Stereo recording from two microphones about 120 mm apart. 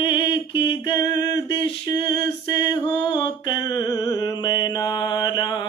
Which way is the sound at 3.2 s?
35° left (ahead or behind).